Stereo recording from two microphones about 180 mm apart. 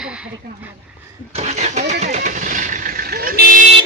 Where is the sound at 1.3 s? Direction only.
40° right (ahead or behind).